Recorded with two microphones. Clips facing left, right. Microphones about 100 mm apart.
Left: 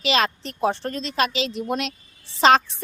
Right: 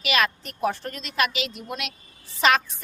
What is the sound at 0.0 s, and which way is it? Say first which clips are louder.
A woman's voice: left 2 dB; 30° left (ahead or behind).